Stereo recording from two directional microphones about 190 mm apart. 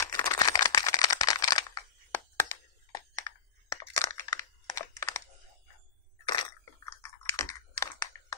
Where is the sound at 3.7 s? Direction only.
15° left (ahead or behind).